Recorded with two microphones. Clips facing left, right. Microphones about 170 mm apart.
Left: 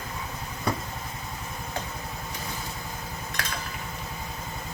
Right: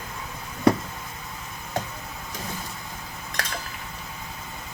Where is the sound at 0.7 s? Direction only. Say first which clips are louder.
Right 10 dB; 75° right (ahead or behind).